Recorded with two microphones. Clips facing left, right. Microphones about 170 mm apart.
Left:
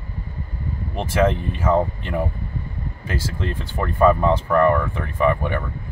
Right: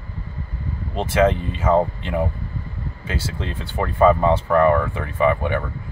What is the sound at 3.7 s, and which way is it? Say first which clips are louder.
Speech: right 1 dB; 10° right (ahead or behind).